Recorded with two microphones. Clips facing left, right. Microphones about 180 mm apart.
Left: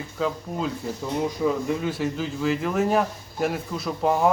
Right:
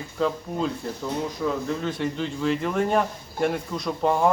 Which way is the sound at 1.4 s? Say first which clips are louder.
Left 3 dB; 15° left (ahead or behind).